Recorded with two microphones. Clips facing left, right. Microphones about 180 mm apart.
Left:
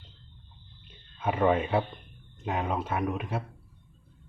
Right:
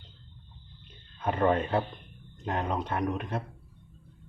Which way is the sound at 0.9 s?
5° left (ahead or behind).